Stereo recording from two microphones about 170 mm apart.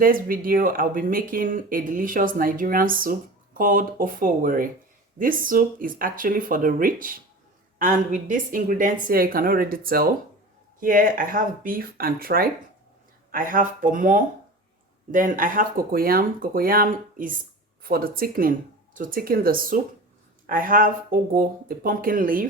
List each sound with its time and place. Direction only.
0.0 s speech: 55° right (ahead or behind)